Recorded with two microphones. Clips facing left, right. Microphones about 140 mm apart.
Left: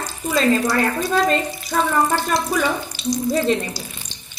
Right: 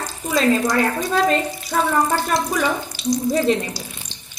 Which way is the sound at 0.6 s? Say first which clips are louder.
Even; 10° right (ahead or behind).